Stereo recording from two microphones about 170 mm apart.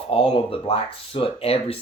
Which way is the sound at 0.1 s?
30° left (ahead or behind).